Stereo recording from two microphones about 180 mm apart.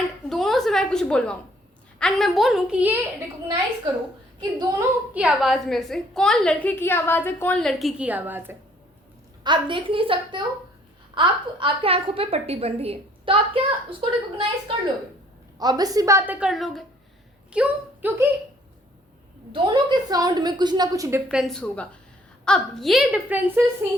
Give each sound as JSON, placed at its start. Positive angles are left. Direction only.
{"t": 0.3, "sound": "a sound", "side_deg": 0}
{"t": 2.0, "sound": "a woman's voice", "side_deg": 0}
{"t": 4.4, "sound": "a woman's voice", "side_deg": -20}
{"t": 5.1, "sound": "a woman's voice", "side_deg": -5}
{"t": 9.4, "sound": "a woman's voice", "side_deg": -25}
{"t": 19.6, "sound": "a woman's voice", "side_deg": -25}
{"t": 21.2, "sound": "a woman's voice", "side_deg": 0}